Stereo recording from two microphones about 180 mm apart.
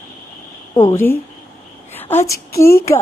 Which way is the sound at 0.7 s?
15° left (ahead or behind).